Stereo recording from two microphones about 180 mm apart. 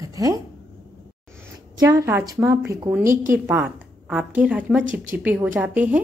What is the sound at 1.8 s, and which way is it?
A woman's voice, 20° right (ahead or behind).